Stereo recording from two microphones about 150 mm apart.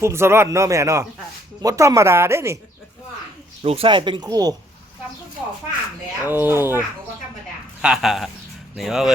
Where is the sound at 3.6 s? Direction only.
40° right (ahead or behind).